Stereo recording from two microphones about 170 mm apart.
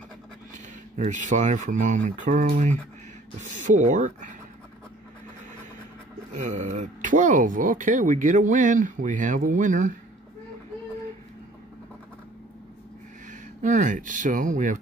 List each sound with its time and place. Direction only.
0.9 s speech: 45° right (ahead or behind)
6.3 s speech: 45° right (ahead or behind)
13.3 s speech: 45° right (ahead or behind)